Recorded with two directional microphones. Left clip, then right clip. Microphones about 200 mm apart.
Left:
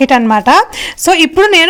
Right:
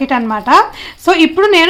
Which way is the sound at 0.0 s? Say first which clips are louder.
Left 7 dB; 45° left (ahead or behind).